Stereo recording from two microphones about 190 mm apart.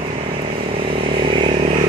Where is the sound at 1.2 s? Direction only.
30° right (ahead or behind).